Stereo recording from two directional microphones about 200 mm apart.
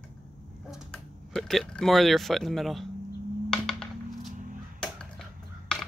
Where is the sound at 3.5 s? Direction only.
Centre (ahead or behind).